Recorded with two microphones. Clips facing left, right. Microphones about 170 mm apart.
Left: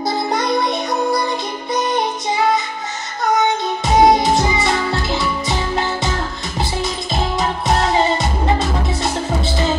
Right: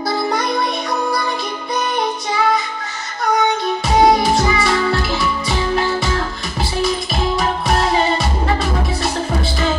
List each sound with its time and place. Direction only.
0.3 s music: 20° left (ahead or behind)
7.3 s music: 20° left (ahead or behind)